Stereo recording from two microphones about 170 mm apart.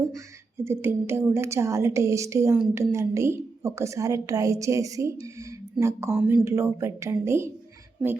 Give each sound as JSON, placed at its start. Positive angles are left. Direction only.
{"t": 0.6, "sound": "a woman's voice", "side_deg": -15}